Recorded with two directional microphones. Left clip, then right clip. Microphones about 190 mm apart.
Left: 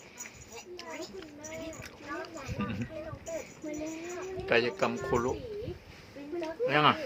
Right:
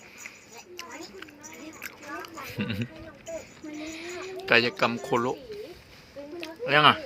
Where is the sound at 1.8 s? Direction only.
15° right (ahead or behind).